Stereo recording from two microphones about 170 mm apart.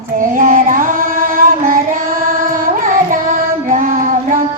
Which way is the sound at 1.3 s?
55° right (ahead or behind).